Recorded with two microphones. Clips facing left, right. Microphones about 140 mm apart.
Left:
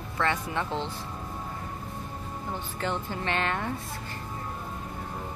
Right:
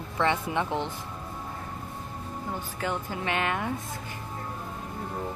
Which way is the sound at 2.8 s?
10° right (ahead or behind).